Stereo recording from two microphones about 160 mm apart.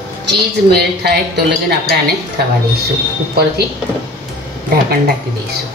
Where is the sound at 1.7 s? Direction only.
70° right (ahead or behind).